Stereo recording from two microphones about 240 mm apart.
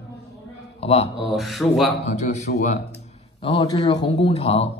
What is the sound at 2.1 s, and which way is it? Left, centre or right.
Speech, left.